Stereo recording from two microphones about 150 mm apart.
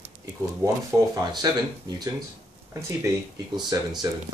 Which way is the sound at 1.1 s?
25° right (ahead or behind).